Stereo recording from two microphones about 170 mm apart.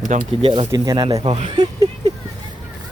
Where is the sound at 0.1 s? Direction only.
50° right (ahead or behind).